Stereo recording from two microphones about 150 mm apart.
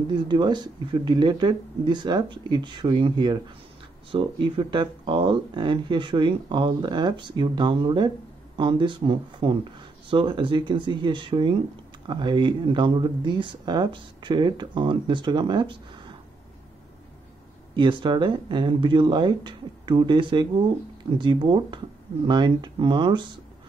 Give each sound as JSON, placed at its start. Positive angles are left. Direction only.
{"t": 0.1, "sound": "speech", "side_deg": -30}
{"t": 17.7, "sound": "speech", "side_deg": -35}